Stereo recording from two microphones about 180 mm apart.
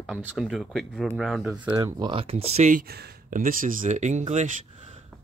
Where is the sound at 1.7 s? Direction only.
15° right (ahead or behind); by 2.8 s 40° right (ahead or behind).